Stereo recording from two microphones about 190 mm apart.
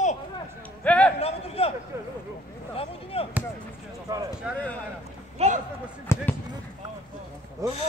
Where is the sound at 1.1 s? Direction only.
30° left (ahead or behind).